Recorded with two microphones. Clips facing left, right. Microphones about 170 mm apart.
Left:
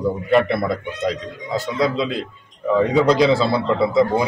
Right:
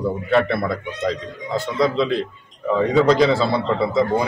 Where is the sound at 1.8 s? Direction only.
10° left (ahead or behind).